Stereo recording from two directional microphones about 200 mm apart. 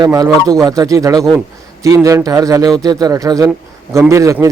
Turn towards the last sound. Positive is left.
turn(degrees=-15)  # may be behind; listen again after turning